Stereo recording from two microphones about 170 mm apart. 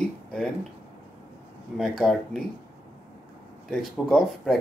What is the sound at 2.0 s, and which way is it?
Speech, centre (ahead or behind).